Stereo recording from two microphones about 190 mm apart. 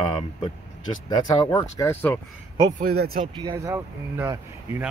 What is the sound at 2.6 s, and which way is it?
Speech, 55° right (ahead or behind).